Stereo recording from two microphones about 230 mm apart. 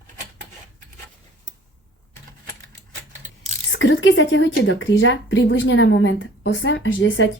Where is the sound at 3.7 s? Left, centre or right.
Left.